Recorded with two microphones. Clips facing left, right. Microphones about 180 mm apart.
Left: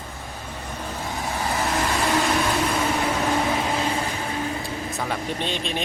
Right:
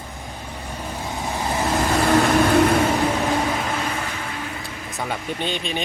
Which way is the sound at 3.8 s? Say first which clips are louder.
Left 2 dB; 30° left (ahead or behind).